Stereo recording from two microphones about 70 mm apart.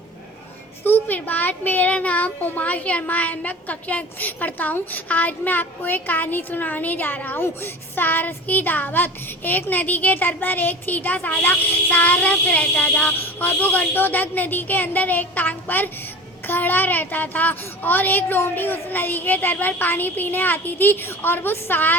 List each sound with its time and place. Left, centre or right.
0.9 s a child's voice: left